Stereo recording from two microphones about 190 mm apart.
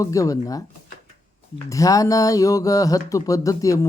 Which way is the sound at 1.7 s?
15° left (ahead or behind).